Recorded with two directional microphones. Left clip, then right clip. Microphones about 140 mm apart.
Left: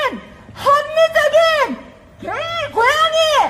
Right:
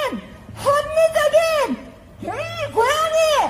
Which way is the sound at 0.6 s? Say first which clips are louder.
Left 3 dB; centre (ahead or behind).